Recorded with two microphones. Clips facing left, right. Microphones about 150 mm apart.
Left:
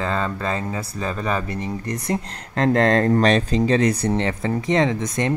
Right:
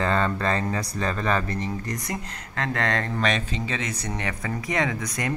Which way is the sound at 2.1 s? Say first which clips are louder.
Left 8 dB; 35° left (ahead or behind).